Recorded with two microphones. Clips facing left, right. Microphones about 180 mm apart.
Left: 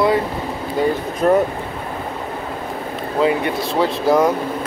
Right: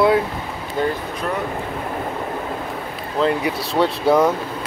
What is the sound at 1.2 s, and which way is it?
Speech, 40° left (ahead or behind).